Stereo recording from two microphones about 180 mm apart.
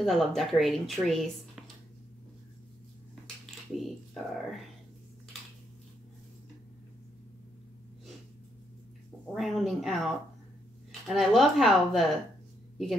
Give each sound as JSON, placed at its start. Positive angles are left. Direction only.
{"t": 0.0, "sound": "a woman's voice", "side_deg": 0}
{"t": 3.7, "sound": "a woman's voice", "side_deg": 0}
{"t": 9.3, "sound": "a woman's voice", "side_deg": 0}